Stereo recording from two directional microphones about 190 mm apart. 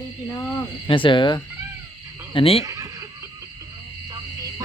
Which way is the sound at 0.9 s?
25° left (ahead or behind).